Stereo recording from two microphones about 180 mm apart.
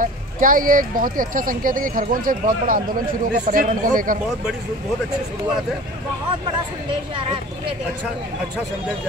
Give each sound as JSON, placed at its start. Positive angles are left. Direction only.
{"t": 0.0, "sound": "speech", "side_deg": -50}
{"t": 6.9, "sound": "speech", "side_deg": -30}